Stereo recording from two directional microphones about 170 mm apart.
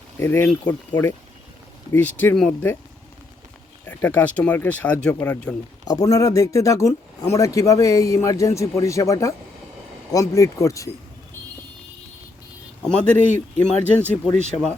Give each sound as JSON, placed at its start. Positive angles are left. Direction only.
{"t": 0.2, "sound": "speech", "side_deg": 15}
{"t": 3.8, "sound": "speech", "side_deg": 10}
{"t": 5.9, "sound": "speech", "side_deg": 20}
{"t": 12.8, "sound": "speech", "side_deg": 5}